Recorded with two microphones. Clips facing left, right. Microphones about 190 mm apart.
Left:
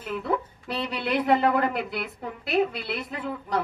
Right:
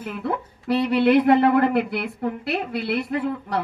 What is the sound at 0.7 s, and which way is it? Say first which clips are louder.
A woman's voice: right 11 dB; 60° right (ahead or behind).